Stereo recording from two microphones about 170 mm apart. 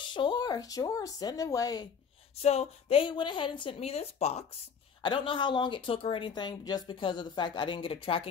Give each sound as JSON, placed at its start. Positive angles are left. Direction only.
{"t": 0.1, "sound": "a woman's voice", "side_deg": 25}
{"t": 2.4, "sound": "a woman's voice", "side_deg": 40}
{"t": 5.0, "sound": "a woman's voice", "side_deg": 30}